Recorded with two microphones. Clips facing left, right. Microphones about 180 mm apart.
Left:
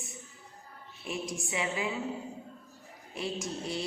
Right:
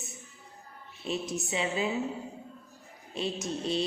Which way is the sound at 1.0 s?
25° right (ahead or behind).